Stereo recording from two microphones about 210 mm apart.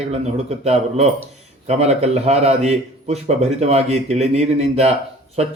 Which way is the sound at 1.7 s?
30° right (ahead or behind).